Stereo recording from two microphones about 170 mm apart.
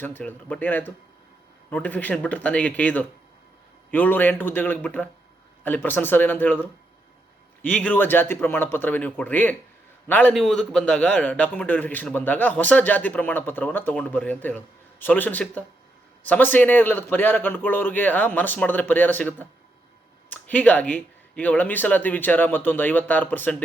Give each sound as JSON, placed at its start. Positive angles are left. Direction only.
{"t": 0.0, "sound": "a man's voice", "side_deg": 10}